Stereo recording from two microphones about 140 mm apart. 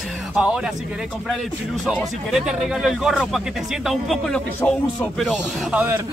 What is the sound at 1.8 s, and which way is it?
Speech, centre (ahead or behind).